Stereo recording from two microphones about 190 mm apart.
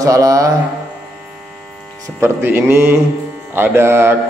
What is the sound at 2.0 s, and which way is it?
A man's voice, 10° right (ahead or behind).